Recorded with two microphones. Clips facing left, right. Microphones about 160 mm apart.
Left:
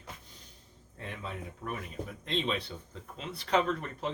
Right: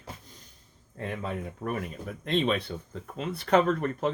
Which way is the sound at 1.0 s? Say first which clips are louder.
Right 7 dB; 50° right (ahead or behind).